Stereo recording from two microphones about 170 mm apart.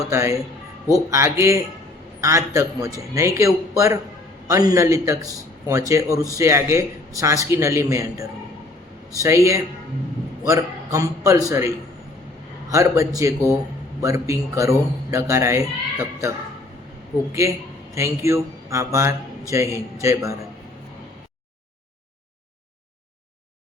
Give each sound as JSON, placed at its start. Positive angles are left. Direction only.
{"t": 0.1, "sound": "a man's voice", "side_deg": -15}
{"t": 12.7, "sound": "speech", "side_deg": -20}
{"t": 17.9, "sound": "speech", "side_deg": -15}